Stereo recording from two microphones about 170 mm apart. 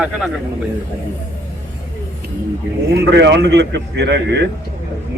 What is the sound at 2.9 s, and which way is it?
A man's voice, 80° right.